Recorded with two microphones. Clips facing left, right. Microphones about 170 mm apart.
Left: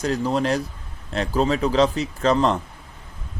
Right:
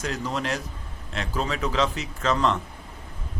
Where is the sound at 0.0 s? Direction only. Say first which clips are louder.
Left 7 dB; 35° left (ahead or behind).